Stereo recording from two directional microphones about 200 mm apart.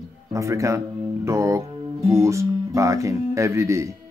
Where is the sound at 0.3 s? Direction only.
15° right (ahead or behind).